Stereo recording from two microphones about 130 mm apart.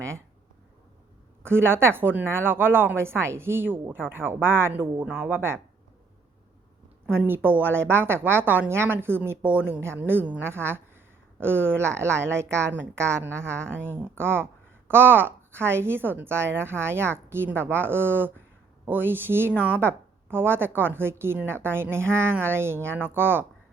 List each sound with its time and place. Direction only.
1.4 s a woman's voice: 20° right (ahead or behind)
7.1 s a woman's voice: 15° right (ahead or behind)